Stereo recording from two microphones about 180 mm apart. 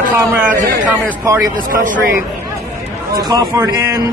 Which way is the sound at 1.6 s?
45° right (ahead or behind).